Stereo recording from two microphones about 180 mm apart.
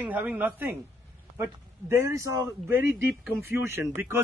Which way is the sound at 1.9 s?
15° right (ahead or behind).